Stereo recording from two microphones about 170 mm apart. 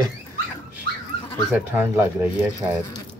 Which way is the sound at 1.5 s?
15° right (ahead or behind).